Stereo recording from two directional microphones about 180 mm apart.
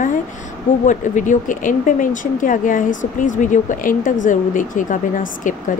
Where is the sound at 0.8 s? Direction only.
45° left (ahead or behind).